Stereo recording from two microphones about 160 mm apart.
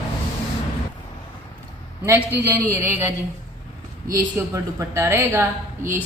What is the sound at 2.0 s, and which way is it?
Speech, 15° right (ahead or behind).